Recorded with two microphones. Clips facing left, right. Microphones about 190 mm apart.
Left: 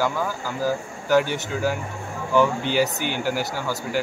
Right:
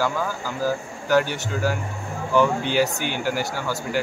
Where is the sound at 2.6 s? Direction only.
50° left (ahead or behind).